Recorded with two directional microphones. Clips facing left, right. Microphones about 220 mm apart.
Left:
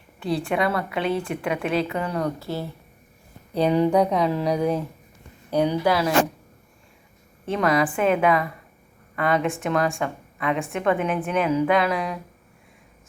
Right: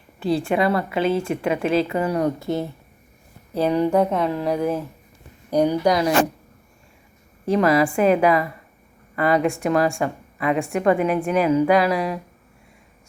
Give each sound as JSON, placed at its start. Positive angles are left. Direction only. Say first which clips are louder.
{"t": 0.2, "sound": "a woman's voice", "louder": "right 3 dB", "side_deg": 0}
{"t": 2.1, "sound": "speech", "louder": "right 5 dB", "side_deg": -20}
{"t": 3.5, "sound": "a woman's voice", "louder": "even", "side_deg": 0}
{"t": 5.5, "sound": "speech", "louder": "right 3 dB", "side_deg": -15}
{"t": 7.4, "sound": "a woman's voice", "louder": "right 4 dB", "side_deg": 0}